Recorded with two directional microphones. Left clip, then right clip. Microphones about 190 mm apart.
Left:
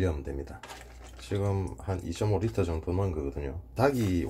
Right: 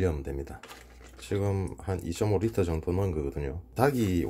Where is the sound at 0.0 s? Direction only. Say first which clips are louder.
Right 2 dB; 30° right (ahead or behind).